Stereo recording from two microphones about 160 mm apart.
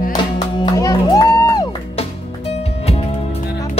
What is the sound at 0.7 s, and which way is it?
Music, 25° left (ahead or behind).